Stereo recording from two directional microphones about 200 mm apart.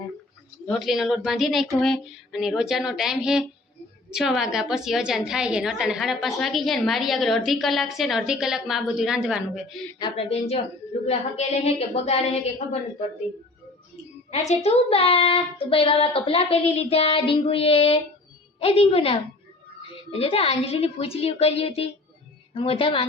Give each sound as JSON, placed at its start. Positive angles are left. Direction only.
{"t": 0.7, "sound": "a woman's voice", "side_deg": 0}
{"t": 10.0, "sound": "a woman's voice", "side_deg": 30}
{"t": 14.3, "sound": "a child's voice", "side_deg": 30}